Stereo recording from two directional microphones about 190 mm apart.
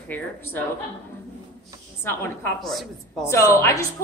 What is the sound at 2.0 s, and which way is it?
Speech, 10° left (ahead or behind).